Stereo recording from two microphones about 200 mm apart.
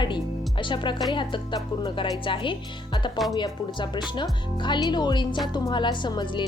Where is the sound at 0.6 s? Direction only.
25° left (ahead or behind).